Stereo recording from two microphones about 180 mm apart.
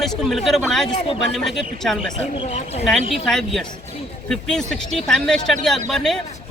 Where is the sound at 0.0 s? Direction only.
Centre (ahead or behind).